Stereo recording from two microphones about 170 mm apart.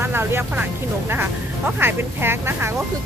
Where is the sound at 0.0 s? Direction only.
15° right (ahead or behind).